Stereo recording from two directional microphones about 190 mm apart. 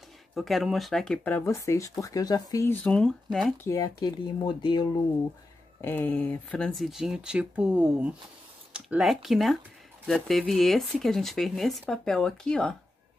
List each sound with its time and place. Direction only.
0.3 s speech: centre (ahead or behind)
3.6 s speech: 20° left (ahead or behind)
5.8 s speech: 10° left (ahead or behind)